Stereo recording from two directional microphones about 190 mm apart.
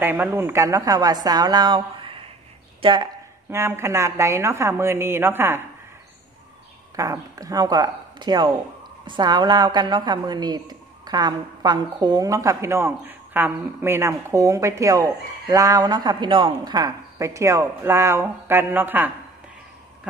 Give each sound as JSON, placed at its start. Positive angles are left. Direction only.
{"t": 0.0, "sound": "a woman's voice", "side_deg": -10}
{"t": 3.4, "sound": "a woman's voice", "side_deg": -15}
{"t": 7.0, "sound": "a woman's voice", "side_deg": -20}